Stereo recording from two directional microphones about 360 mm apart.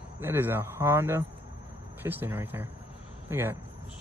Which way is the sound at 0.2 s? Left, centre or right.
Centre.